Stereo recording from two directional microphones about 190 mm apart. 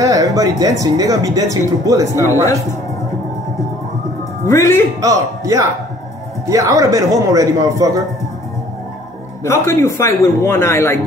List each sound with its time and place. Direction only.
0.0 s a man's voice: 20° right (ahead or behind)
4.5 s a man's voice: 15° left (ahead or behind)
5.0 s a man's voice: 15° right (ahead or behind)
9.4 s a man's voice: 15° left (ahead or behind)